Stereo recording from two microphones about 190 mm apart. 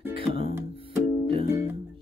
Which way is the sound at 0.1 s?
30° right (ahead or behind).